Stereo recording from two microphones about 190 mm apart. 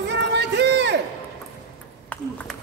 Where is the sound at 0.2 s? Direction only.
65° right (ahead or behind).